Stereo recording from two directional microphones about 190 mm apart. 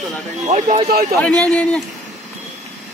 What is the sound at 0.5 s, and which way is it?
Speech, 40° right (ahead or behind).